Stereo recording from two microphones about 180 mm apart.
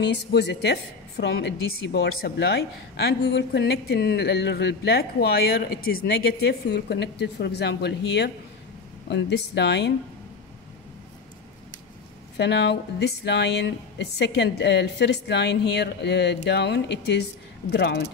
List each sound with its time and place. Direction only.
0.0 s a woman's voice: 70° left (ahead or behind)
12.4 s speech: 70° left (ahead or behind)